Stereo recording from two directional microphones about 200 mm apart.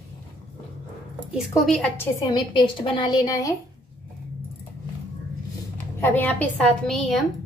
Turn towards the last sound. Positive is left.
turn(degrees=0)  # may be behind; listen again after turning